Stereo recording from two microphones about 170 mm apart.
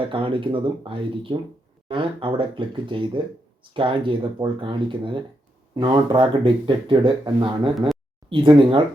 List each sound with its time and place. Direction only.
0.1 s speech: 30° right (ahead or behind)